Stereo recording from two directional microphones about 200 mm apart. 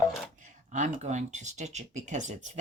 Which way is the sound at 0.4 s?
40° right (ahead or behind).